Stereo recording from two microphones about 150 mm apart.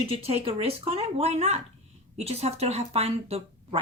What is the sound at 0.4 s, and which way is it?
Speech, 40° right (ahead or behind).